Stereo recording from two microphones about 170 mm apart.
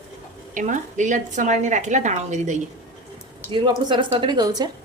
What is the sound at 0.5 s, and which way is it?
A woman's voice, 45° right (ahead or behind).